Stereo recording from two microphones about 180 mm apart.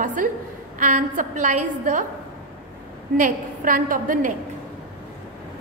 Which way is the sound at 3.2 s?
50° right (ahead or behind).